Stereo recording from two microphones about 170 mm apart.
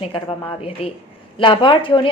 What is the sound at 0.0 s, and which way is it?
A woman's voice, 30° left (ahead or behind).